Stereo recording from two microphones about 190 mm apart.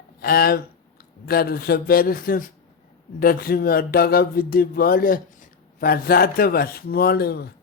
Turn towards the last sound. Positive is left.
turn(degrees=60)  # may be behind; listen again after turning